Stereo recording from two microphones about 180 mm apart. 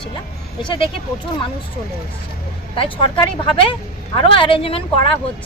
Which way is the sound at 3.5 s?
30° left (ahead or behind).